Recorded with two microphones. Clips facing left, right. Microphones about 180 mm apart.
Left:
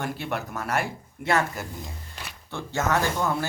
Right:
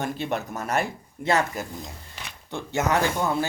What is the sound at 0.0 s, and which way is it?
Speech, 20° right (ahead or behind).